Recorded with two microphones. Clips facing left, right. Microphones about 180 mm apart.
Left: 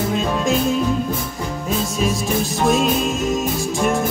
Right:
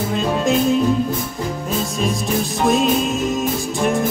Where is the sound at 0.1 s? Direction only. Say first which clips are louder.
Right 4 dB; centre (ahead or behind).